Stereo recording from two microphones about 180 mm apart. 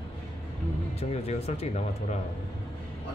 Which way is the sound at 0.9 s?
35° left (ahead or behind).